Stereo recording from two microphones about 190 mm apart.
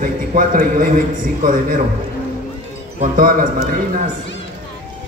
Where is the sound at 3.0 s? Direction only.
45° right (ahead or behind).